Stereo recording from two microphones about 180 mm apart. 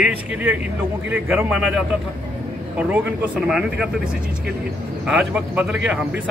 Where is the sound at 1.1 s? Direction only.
10° right (ahead or behind).